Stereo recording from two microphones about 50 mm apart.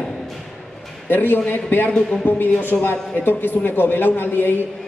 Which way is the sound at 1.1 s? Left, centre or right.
Left.